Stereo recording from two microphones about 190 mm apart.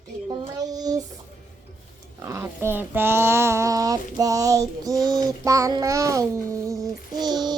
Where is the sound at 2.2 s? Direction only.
15° right (ahead or behind).